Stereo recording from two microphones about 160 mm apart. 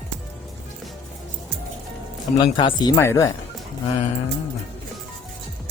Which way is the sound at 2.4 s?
30° left (ahead or behind).